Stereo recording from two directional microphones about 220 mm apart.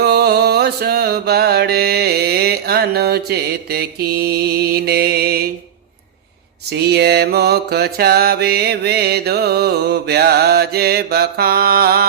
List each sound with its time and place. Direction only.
0.0 s mantra: 45° right (ahead or behind)
6.7 s mantra: 50° right (ahead or behind)